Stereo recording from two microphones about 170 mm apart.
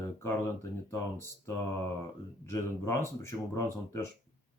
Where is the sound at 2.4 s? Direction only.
15° left (ahead or behind).